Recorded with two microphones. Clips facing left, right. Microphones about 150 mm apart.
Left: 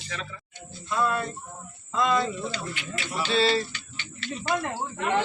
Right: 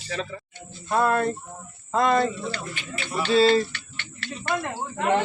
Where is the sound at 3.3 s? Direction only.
40° right (ahead or behind).